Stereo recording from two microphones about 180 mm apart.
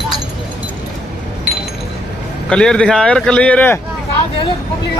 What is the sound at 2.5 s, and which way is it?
Speech, 5° left (ahead or behind).